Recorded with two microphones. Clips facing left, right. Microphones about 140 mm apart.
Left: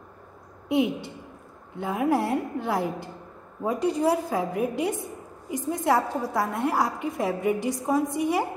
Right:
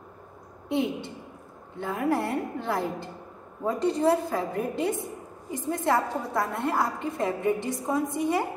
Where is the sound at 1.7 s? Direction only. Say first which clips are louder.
Left 2 dB; 20° left (ahead or behind).